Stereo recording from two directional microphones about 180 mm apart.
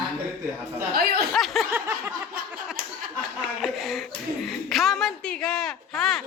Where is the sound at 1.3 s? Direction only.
Centre (ahead or behind).